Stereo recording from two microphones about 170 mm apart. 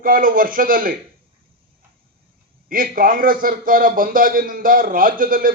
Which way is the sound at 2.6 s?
55° right (ahead or behind).